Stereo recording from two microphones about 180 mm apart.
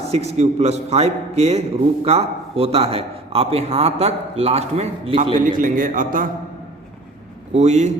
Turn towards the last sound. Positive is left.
turn(degrees=-40)  # may be behind; listen again after turning